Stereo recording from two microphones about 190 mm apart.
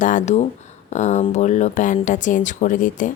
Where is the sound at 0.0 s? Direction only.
40° left (ahead or behind).